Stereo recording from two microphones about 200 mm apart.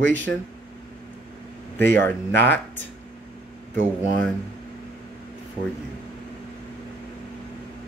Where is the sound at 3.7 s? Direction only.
40° right (ahead or behind).